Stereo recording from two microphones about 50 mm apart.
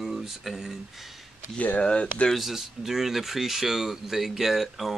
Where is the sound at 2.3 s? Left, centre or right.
Centre.